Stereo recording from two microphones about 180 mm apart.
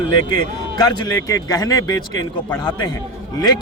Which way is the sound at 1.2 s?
20° left (ahead or behind).